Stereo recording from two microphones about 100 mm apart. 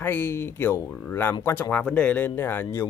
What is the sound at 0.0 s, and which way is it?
Speech, 20° left (ahead or behind).